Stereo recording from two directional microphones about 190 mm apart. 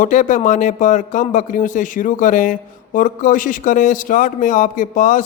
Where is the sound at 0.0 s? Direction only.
40° left (ahead or behind).